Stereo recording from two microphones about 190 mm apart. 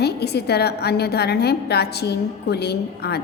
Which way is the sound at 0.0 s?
60° left (ahead or behind).